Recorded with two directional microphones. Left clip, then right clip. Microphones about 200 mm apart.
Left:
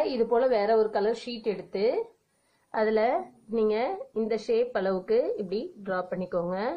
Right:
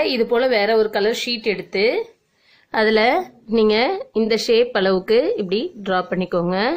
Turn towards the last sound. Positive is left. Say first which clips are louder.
# right 9 dB
turn(degrees=-40)  # may be behind; listen again after turning